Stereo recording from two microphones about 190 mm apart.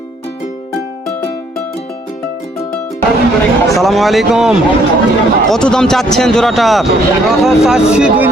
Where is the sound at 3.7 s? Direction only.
Centre (ahead or behind).